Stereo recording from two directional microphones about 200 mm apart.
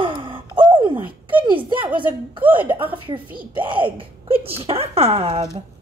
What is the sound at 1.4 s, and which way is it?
Speech, 25° right (ahead or behind).